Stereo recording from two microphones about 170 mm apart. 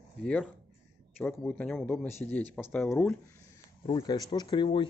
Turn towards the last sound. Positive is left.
turn(degrees=30)  # may be behind; listen again after turning